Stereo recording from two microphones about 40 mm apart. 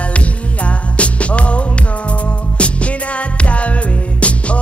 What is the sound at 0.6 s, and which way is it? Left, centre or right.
Music, left.